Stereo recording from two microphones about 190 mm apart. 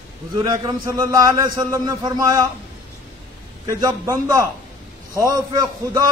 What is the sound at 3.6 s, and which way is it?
A man's voice, 15° right (ahead or behind).